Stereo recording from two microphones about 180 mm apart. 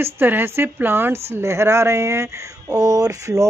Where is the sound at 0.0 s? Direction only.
10° right (ahead or behind).